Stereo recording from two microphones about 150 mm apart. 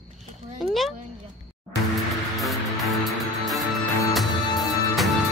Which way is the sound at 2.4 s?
Centre (ahead or behind).